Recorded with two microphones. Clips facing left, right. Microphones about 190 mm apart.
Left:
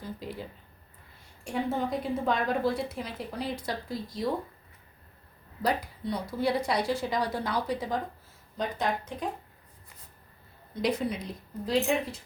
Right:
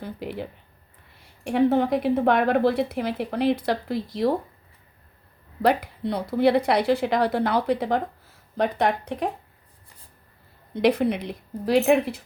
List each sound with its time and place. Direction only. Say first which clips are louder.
0.0 s a sound: right 6 dB; 65° right (ahead or behind)
1.5 s a woman's voice: right 10 dB; 65° right (ahead or behind)
5.6 s a woman's voice: right 7 dB; 65° right (ahead or behind)
10.8 s a woman's voice: right 8 dB; 65° right (ahead or behind)